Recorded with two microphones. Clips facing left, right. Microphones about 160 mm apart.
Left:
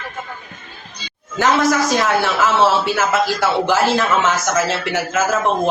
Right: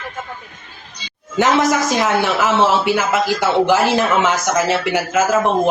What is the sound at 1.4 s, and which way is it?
A man's voice, 20° right (ahead or behind).